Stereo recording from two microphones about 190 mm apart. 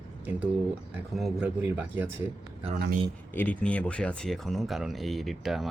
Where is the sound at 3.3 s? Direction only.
10° left (ahead or behind).